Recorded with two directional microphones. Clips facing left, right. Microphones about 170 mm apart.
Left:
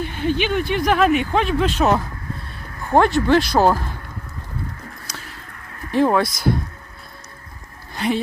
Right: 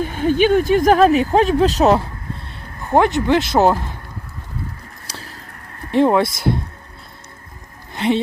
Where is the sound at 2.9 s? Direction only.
20° right (ahead or behind).